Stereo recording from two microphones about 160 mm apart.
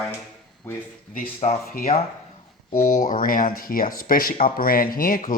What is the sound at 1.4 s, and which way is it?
Speech, 45° left (ahead or behind).